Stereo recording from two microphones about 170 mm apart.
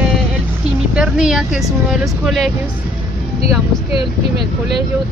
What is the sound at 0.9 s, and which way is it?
Speech, 5° right (ahead or behind).